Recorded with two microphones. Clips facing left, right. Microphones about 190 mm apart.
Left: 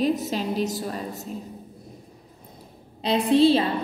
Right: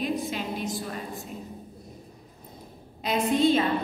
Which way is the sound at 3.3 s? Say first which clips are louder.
Left 5 dB; 35° left (ahead or behind).